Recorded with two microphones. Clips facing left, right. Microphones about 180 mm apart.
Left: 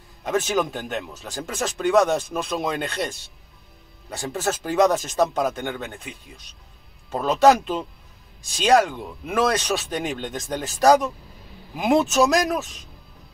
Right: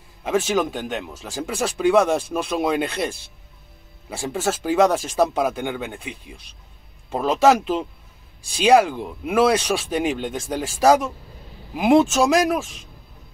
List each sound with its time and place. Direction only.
0.2 s speech: 5° right (ahead or behind)
4.3 s speech: 5° right (ahead or behind)